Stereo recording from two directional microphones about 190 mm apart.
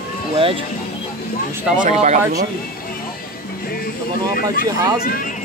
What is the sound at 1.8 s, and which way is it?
Speech, 40° right (ahead or behind).